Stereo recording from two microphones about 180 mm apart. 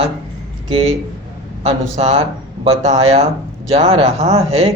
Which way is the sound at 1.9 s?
35° right (ahead or behind).